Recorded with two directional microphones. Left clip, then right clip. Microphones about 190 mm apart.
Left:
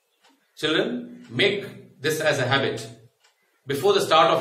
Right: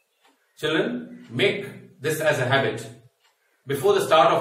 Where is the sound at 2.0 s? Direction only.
20° left (ahead or behind).